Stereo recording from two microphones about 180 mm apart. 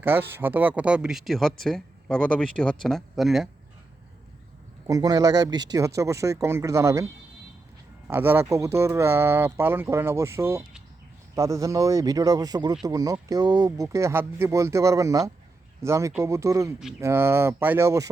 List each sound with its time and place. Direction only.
0.0 s speech: 10° right (ahead or behind)
4.9 s speech: 20° right (ahead or behind)